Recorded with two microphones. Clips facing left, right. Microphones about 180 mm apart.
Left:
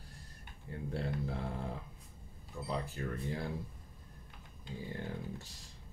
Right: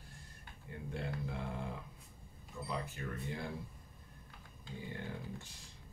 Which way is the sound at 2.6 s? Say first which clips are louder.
Left 3 dB; 35° left (ahead or behind).